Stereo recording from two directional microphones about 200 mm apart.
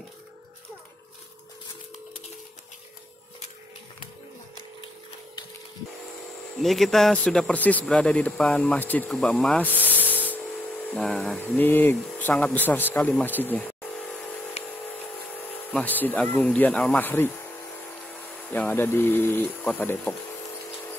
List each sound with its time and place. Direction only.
6.6 s a man's voice: centre (ahead or behind)
9.8 s rub: 10° right (ahead or behind)
10.9 s speech: 5° left (ahead or behind)
14.6 s a sound: 30° left (ahead or behind)
15.7 s speech: 10° left (ahead or behind)
18.5 s speech: 10° left (ahead or behind)